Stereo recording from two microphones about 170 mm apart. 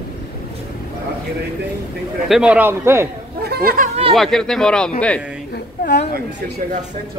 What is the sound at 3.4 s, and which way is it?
Speech, 65° right (ahead or behind).